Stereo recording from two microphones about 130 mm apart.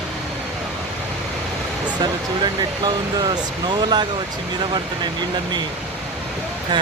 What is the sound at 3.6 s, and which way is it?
Speech, 35° right (ahead or behind).